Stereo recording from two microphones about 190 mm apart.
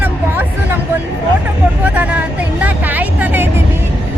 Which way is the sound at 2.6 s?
10° right (ahead or behind).